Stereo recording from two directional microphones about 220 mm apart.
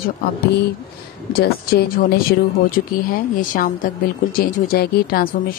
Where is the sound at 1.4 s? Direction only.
45° left (ahead or behind).